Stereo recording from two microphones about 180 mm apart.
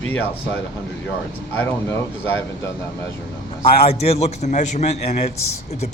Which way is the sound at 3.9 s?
35° left (ahead or behind).